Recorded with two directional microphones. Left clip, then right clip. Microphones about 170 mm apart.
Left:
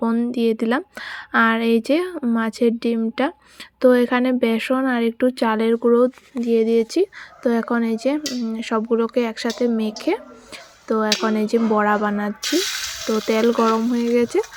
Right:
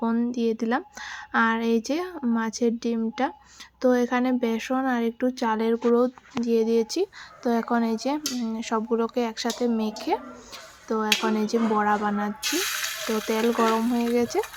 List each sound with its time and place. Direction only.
0.0 s speech: 20° left (ahead or behind)